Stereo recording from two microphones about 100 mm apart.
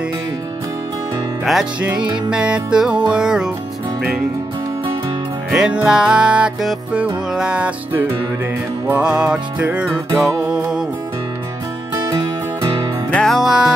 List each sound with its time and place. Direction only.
1.4 s music: 5° right (ahead or behind)
5.5 s music: 10° right (ahead or behind)
13.1 s music: 5° left (ahead or behind)